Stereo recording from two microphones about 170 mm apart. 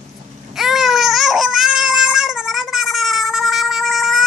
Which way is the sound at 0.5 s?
Centre (ahead or behind).